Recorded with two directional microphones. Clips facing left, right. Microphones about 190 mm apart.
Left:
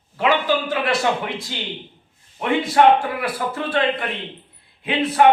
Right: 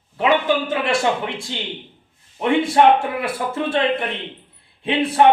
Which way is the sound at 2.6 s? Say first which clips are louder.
Left 1 dB; 25° right (ahead or behind).